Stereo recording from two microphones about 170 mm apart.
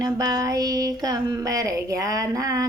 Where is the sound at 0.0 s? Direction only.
20° right (ahead or behind).